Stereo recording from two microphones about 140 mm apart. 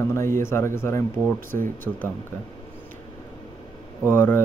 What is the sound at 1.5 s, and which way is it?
Speech, 75° right (ahead or behind).